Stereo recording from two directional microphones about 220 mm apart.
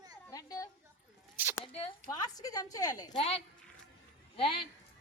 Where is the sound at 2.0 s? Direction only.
15° left (ahead or behind).